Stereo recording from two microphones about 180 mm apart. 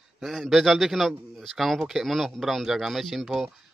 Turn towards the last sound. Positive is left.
turn(degrees=0)  # may be behind; listen again after turning